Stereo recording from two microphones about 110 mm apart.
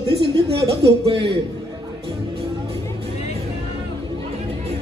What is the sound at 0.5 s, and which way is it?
Speech, 60° right (ahead or behind).